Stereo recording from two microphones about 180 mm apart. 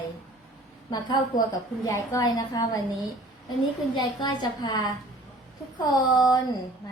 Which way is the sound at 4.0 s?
25° left (ahead or behind).